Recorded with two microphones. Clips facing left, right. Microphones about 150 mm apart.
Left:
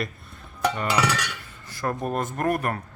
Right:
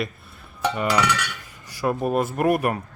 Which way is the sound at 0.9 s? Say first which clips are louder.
Right 3 dB; 30° left (ahead or behind).